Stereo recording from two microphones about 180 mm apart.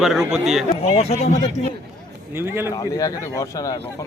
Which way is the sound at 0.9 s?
35° left (ahead or behind).